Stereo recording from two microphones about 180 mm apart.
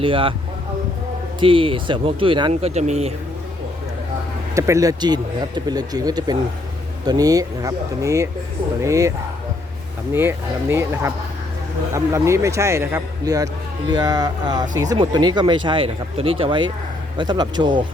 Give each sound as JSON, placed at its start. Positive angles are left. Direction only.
{"t": 0.0, "sound": "speech", "side_deg": -30}
{"t": 1.4, "sound": "speech", "side_deg": -30}
{"t": 4.5, "sound": "a man's voice", "side_deg": -15}